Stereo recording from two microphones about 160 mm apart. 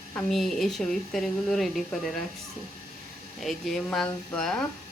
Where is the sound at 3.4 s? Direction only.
Centre (ahead or behind).